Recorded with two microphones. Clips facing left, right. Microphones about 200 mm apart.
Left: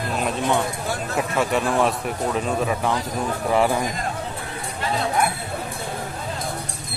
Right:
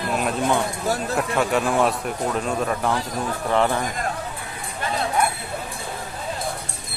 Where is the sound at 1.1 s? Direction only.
Centre (ahead or behind).